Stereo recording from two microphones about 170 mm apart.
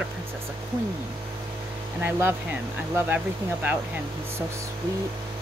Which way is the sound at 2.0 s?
10° right (ahead or behind).